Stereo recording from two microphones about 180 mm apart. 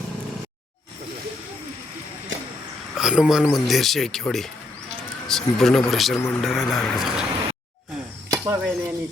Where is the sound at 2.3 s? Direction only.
90° right.